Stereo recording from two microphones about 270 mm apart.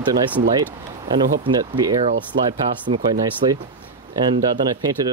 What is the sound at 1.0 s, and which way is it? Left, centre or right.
Speech, centre.